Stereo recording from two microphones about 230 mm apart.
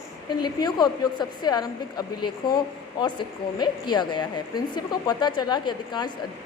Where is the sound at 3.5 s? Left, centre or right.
Centre.